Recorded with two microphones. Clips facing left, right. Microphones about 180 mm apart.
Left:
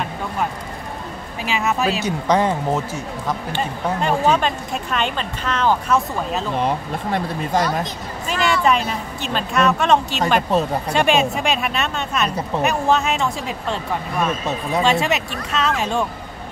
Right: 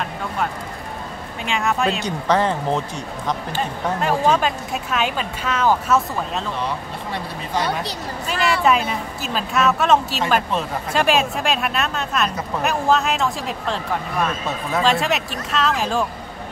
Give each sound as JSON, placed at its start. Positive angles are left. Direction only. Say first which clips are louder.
{"t": 1.4, "sound": "speech", "louder": "even", "side_deg": 5}
{"t": 6.5, "sound": "speech", "louder": "left 5 dB", "side_deg": 50}
{"t": 8.3, "sound": "speech", "louder": "even", "side_deg": 0}
{"t": 10.5, "sound": "speech", "louder": "left 5 dB", "side_deg": 40}
{"t": 10.9, "sound": "speech", "louder": "right 1 dB", "side_deg": 0}
{"t": 14.8, "sound": "speech", "louder": "left 1 dB", "side_deg": 0}